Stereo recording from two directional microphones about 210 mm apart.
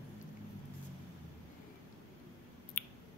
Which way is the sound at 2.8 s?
40° left (ahead or behind).